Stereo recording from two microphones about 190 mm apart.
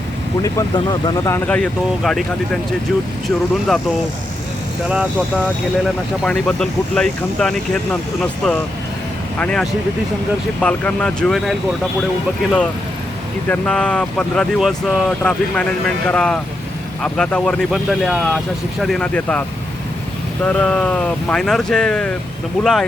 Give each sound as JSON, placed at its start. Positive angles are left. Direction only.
{"t": 0.4, "sound": "speech", "side_deg": 20}
{"t": 1.5, "sound": "speech", "side_deg": 5}
{"t": 6.2, "sound": "speech", "side_deg": 5}